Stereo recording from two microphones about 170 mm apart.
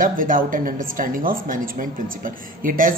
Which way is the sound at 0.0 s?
55° right (ahead or behind).